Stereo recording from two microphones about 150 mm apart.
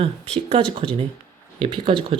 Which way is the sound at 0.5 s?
40° right (ahead or behind).